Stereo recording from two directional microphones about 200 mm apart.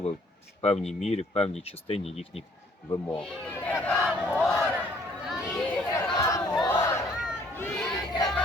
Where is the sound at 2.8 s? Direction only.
15° left (ahead or behind).